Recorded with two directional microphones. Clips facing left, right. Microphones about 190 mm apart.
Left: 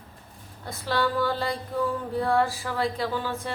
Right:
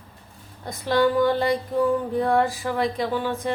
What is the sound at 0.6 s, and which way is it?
A woman's voice, 15° right (ahead or behind).